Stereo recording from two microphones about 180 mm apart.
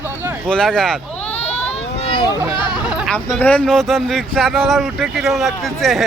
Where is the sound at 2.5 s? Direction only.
25° left (ahead or behind).